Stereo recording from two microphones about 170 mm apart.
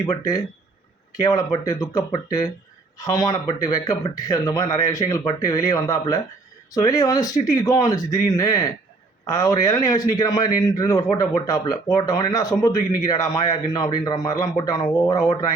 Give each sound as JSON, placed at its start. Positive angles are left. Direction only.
{"t": 0.0, "sound": "a man's voice", "side_deg": 20}